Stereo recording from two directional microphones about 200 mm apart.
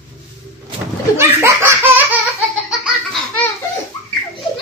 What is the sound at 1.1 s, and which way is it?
Laughter, 10° right (ahead or behind).